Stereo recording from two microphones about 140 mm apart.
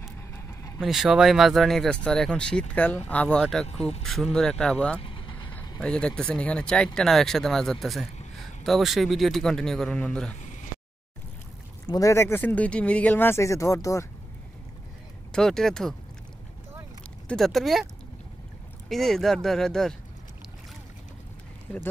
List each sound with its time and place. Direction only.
0.3 s vehicle: 20° left (ahead or behind)
0.7 s speech: 5° right (ahead or behind)
3.6 s speech: 50° left (ahead or behind)
4.0 s speech: 5° left (ahead or behind)
5.0 s vehicle: 35° left (ahead or behind)
5.8 s speech: 5° left (ahead or behind)
11.9 s speech: 20° left (ahead or behind)
15.3 s speech: 5° left (ahead or behind)
17.3 s speech: centre (ahead or behind)
18.9 s speech: centre (ahead or behind)
21.7 s speech: 5° left (ahead or behind)